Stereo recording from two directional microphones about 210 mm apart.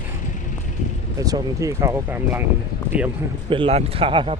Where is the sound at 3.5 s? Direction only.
25° right (ahead or behind).